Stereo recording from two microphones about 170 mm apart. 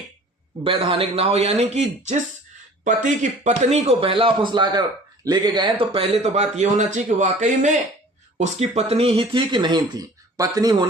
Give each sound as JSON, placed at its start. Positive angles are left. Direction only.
{"t": 0.6, "sound": "speech", "side_deg": -30}